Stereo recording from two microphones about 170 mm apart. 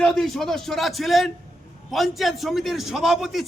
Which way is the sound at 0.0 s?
Centre (ahead or behind).